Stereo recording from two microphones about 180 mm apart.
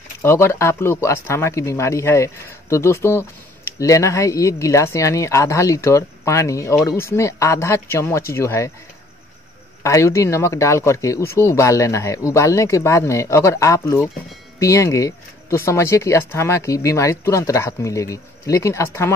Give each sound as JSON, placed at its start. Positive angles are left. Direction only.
{"t": 0.2, "sound": "speech", "side_deg": 15}
{"t": 9.8, "sound": "speech", "side_deg": 15}